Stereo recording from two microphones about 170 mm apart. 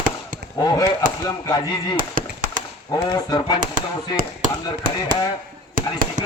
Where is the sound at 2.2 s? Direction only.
55° right (ahead or behind).